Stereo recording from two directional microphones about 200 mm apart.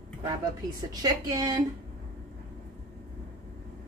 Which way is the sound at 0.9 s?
20° right (ahead or behind).